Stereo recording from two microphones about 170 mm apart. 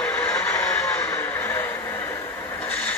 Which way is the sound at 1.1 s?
10° left (ahead or behind).